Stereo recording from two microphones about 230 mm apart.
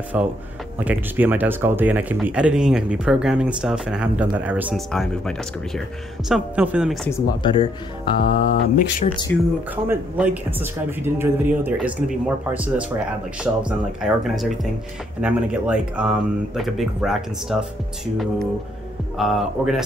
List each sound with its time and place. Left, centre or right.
0.1 s speech: centre
7.1 s speech: centre
9.3 s speech: centre
9.8 s speech: centre